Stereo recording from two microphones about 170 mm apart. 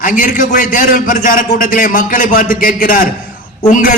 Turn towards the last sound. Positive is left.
turn(degrees=50)  # may be behind; listen again after turning